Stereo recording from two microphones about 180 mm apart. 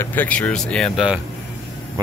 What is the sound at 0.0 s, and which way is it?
Speech, 10° left (ahead or behind).